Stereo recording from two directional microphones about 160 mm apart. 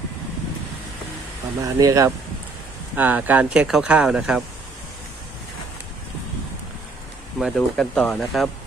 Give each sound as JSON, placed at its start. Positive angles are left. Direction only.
{"t": 1.6, "sound": "speech", "side_deg": -20}
{"t": 7.3, "sound": "speech", "side_deg": 0}